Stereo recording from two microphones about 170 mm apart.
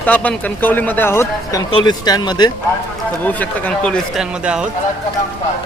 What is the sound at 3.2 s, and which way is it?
Speech, 10° left (ahead or behind).